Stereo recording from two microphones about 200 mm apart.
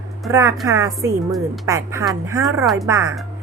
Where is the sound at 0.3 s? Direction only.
15° right (ahead or behind).